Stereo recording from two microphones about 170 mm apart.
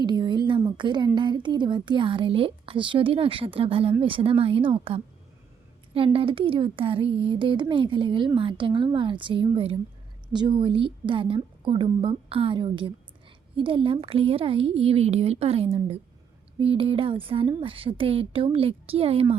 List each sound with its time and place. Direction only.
0.0 s a woman's voice: 25° right (ahead or behind)
6.1 s a woman's voice: 30° right (ahead or behind)